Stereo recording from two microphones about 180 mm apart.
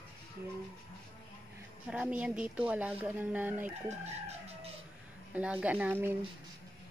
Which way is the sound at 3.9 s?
35° right (ahead or behind).